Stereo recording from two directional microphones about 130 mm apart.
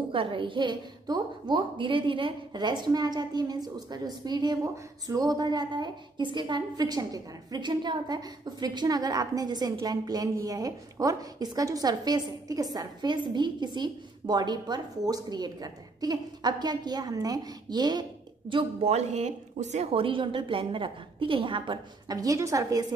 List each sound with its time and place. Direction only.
0.1 s a woman's voice: 40° right (ahead or behind)
18.5 s a woman's voice: 45° right (ahead or behind); by 22.9 s 25° right (ahead or behind)